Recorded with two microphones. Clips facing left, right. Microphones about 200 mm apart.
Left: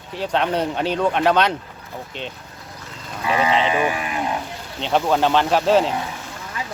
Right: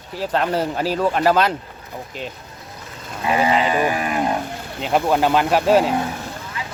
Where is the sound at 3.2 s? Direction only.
30° right (ahead or behind).